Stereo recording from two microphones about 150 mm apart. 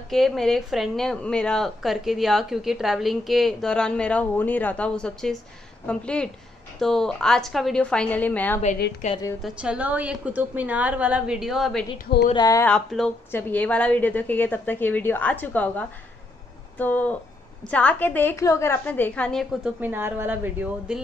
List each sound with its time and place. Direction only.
0.1 s a woman's voice: centre (ahead or behind)
9.0 s a woman's voice: 50° left (ahead or behind)
9.4 s a woman's voice: 10° right (ahead or behind)
12.4 s speech: 25° left (ahead or behind)
12.6 s a woman's voice: 5° left (ahead or behind)
19.6 s a woman's voice: 10° right (ahead or behind)